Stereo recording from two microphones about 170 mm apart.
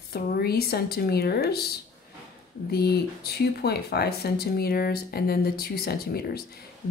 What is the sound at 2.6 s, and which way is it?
Speech, 70° left (ahead or behind).